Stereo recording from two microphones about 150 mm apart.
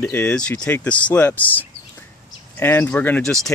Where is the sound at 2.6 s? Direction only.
15° left (ahead or behind).